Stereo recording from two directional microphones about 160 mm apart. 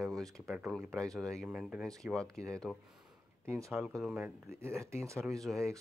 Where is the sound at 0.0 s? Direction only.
Centre (ahead or behind).